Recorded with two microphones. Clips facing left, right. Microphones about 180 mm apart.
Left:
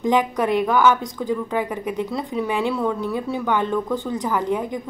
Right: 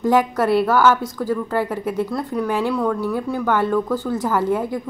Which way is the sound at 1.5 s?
5° right (ahead or behind).